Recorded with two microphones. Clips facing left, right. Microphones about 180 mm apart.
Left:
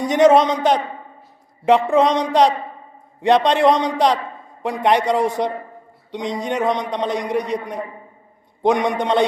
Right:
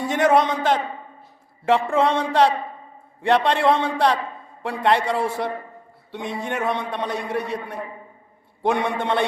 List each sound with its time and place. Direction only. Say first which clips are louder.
0.0 s a man's voice: left 5 dB; 20° left (ahead or behind)